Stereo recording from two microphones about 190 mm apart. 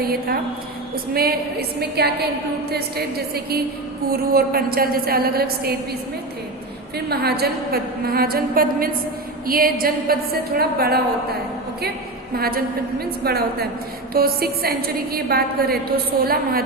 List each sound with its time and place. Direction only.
0.0 s a woman's voice: 55° right (ahead or behind)
7.1 s a woman's voice: 55° right (ahead or behind)
12.4 s a woman's voice: 50° right (ahead or behind)